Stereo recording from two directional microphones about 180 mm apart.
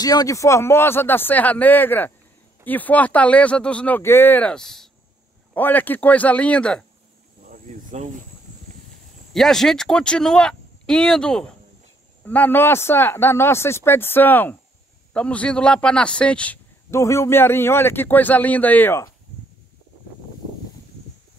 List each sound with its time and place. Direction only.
0.0 s a man's voice: 20° left (ahead or behind)
7.4 s a sound: 45° right (ahead or behind)
9.3 s a man's voice: centre (ahead or behind)